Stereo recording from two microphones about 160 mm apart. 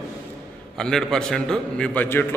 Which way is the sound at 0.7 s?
5° left (ahead or behind).